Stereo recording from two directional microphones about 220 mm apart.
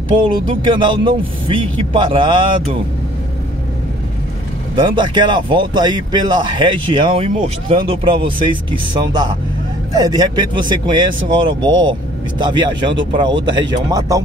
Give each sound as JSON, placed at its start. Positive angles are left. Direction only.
{"t": 0.2, "sound": "a man's voice", "side_deg": -20}
{"t": 4.7, "sound": "a man's voice", "side_deg": -20}